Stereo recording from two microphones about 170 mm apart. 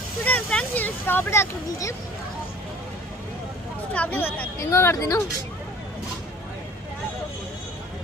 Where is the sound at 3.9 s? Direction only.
10° left (ahead or behind).